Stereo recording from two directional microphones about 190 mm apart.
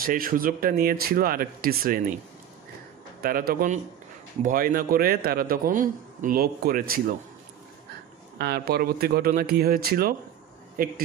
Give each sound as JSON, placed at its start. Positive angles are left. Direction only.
{"t": 0.0, "sound": "a man's voice", "side_deg": -50}
{"t": 3.2, "sound": "a man's voice", "side_deg": -50}
{"t": 8.4, "sound": "a man's voice", "side_deg": -55}